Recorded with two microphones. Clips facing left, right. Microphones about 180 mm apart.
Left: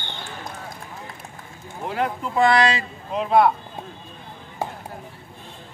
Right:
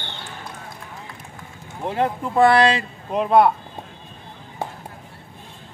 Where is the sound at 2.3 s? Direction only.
50° right (ahead or behind).